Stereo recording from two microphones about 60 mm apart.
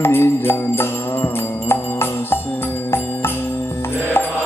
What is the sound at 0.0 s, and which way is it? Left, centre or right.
Music, left.